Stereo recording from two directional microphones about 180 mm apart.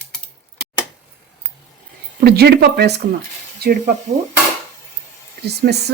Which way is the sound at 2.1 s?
60° right (ahead or behind).